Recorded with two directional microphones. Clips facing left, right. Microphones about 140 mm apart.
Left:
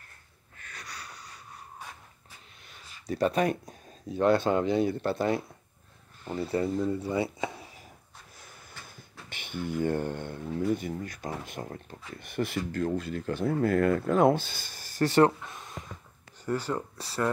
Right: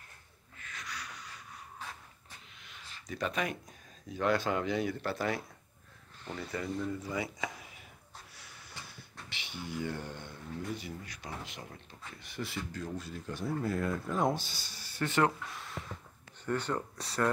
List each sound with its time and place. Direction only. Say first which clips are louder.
0.6 s wheeze: even; 40° left (ahead or behind)
2.6 s speech: left 5 dB; 35° left (ahead or behind)
9.3 s speech: left 8 dB; 50° left (ahead or behind); by 14.7 s 65° left (ahead or behind)
14.7 s speech: left 8 dB; 45° left (ahead or behind)
15.4 s a sound: left 1 dB; 20° left (ahead or behind)
16.4 s speech: left 3 dB; 10° left (ahead or behind)